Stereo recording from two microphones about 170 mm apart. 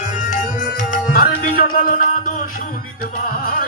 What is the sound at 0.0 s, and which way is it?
Music, 50° left (ahead or behind).